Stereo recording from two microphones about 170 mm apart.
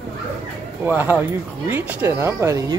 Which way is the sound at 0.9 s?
10° right (ahead or behind).